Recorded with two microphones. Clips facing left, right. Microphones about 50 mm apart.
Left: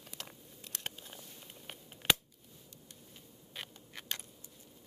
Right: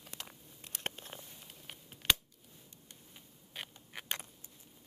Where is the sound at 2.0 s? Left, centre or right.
Centre.